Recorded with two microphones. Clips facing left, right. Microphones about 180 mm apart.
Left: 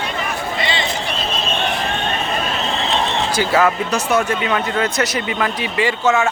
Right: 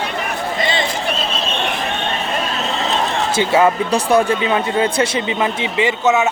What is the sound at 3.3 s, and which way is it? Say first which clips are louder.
Speech: right 3 dB; 25° right (ahead or behind).